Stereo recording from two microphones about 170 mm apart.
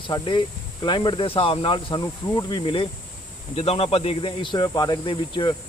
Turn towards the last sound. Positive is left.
turn(degrees=30)  # may be behind; listen again after turning